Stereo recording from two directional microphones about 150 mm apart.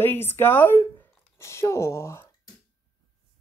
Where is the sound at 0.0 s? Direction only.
15° left (ahead or behind).